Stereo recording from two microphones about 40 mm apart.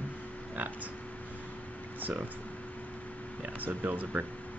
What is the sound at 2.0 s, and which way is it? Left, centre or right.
Speech, right.